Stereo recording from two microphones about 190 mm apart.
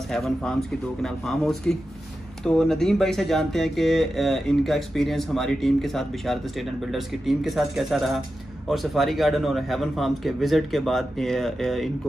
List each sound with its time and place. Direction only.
0.1 s speech: centre (ahead or behind)